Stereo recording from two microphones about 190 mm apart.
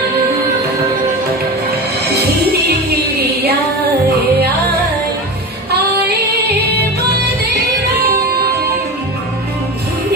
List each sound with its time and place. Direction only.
3.2 s music: 60° right (ahead or behind)